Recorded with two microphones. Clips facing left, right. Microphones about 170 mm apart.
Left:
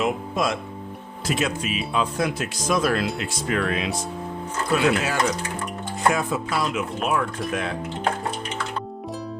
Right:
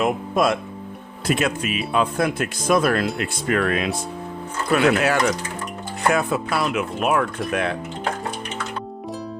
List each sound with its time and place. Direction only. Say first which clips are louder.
0.0 s speech: right 4 dB; 55° right (ahead or behind)
6.1 s speech: right 3 dB; 65° right (ahead or behind)